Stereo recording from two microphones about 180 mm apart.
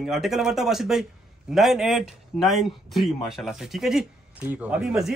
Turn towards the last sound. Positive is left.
turn(degrees=-5)  # may be behind; listen again after turning